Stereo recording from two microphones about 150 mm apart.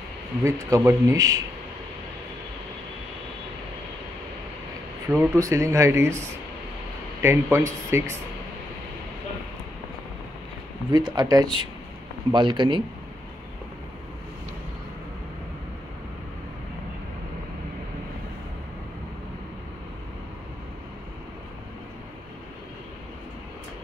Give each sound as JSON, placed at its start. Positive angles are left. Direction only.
{"t": 0.4, "sound": "speech", "side_deg": -20}
{"t": 5.1, "sound": "a man's voice", "side_deg": -15}
{"t": 10.9, "sound": "speech", "side_deg": -25}